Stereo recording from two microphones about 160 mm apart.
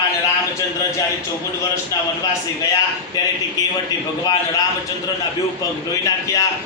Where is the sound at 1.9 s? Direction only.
20° left (ahead or behind).